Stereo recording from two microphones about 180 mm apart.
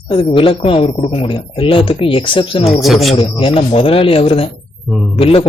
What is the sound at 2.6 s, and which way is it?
Speech, centre (ahead or behind).